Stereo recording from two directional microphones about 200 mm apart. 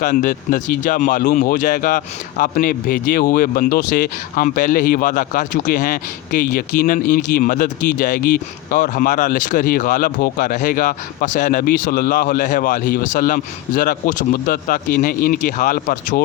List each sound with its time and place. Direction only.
0.0 s speech: 40° left (ahead or behind)